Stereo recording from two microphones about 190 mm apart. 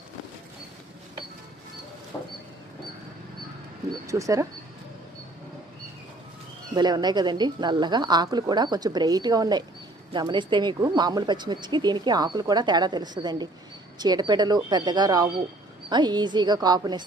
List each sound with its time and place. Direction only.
2.1 s a sound: 10° left (ahead or behind)
4.0 s speech: 15° right (ahead or behind)
6.7 s speech: 20° right (ahead or behind)